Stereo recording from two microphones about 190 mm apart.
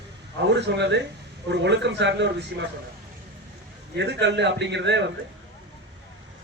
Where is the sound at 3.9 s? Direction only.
65° right (ahead or behind).